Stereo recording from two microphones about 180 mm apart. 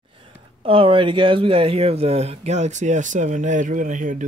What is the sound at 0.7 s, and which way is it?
Speech, 30° right (ahead or behind).